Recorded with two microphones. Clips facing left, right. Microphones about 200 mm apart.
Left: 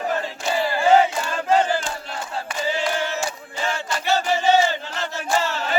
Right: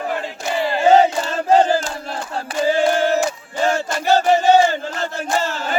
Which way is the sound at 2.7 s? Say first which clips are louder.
Right 10 dB; 50° right (ahead or behind).